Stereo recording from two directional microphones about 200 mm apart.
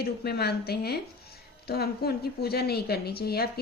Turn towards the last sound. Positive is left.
turn(degrees=50)  # may be behind; listen again after turning